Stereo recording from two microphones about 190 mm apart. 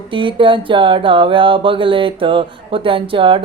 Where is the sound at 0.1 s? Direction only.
25° right (ahead or behind).